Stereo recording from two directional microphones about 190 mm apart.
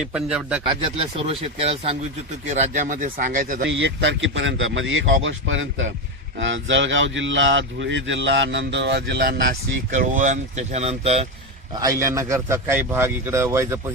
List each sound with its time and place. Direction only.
0.0 s speech: 5° right (ahead or behind)
0.7 s speech: 30° right (ahead or behind)
3.6 s speech: 70° right (ahead or behind)
9.9 s speech: 40° right (ahead or behind)
11.7 s a man's voice: 20° right (ahead or behind)